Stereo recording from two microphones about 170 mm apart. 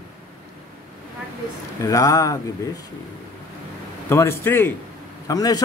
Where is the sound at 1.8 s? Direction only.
20° left (ahead or behind).